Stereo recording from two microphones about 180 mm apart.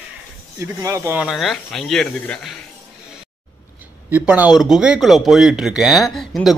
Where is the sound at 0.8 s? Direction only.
15° right (ahead or behind); by 2.5 s 5° left (ahead or behind).